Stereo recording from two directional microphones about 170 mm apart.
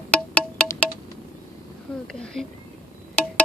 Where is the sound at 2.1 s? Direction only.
5° left (ahead or behind).